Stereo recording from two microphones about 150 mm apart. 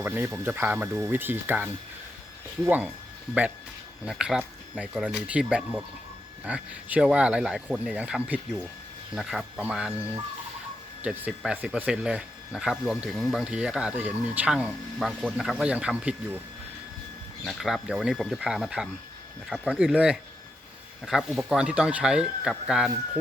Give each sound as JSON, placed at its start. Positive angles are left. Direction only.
{"t": 0.0, "sound": "speech", "side_deg": -15}
{"t": 4.0, "sound": "speech", "side_deg": -5}
{"t": 11.0, "sound": "speech", "side_deg": -5}
{"t": 17.4, "sound": "speech", "side_deg": 0}